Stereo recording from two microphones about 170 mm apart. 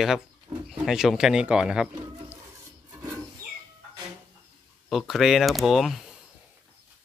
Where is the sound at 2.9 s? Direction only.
15° right (ahead or behind).